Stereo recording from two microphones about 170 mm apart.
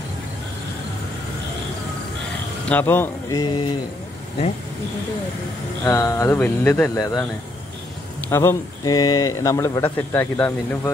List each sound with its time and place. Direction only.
2.7 s a man's voice: 10° left (ahead or behind)
3.3 s a sound: 25° left (ahead or behind)
5.9 s a man's voice: 20° left (ahead or behind)
8.3 s a man's voice: 15° left (ahead or behind)